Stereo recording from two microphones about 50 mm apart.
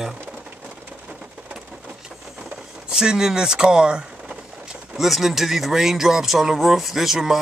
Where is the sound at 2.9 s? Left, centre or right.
Centre.